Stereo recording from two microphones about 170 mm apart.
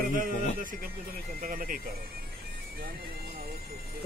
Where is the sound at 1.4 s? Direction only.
55° right (ahead or behind).